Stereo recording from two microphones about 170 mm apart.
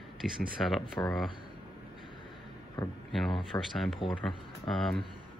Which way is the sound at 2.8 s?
25° left (ahead or behind).